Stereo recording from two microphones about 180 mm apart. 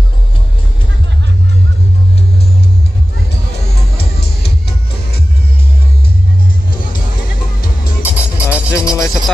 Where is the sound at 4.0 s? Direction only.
60° left (ahead or behind).